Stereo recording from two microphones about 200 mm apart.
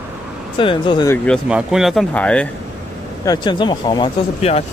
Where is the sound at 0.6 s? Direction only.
25° left (ahead or behind).